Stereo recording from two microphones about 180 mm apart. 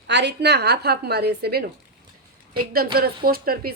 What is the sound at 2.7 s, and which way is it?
A woman's voice, 55° right (ahead or behind).